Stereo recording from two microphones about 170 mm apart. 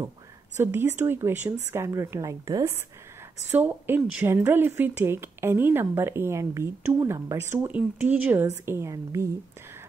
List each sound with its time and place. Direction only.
0.6 s speech: 10° right (ahead or behind)